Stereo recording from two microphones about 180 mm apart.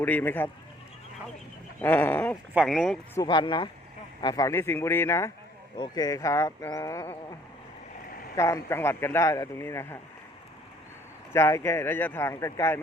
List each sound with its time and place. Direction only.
0.0 s speech: 10° left (ahead or behind)
1.8 s speech: 10° left (ahead or behind)
2.5 s speech: centre (ahead or behind)
3.2 s speech: 25° left (ahead or behind)
8.4 s speech: 15° left (ahead or behind)
11.3 s speech: 15° left (ahead or behind)